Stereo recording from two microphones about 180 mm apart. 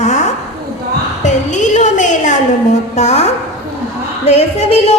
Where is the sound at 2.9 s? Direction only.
35° left (ahead or behind).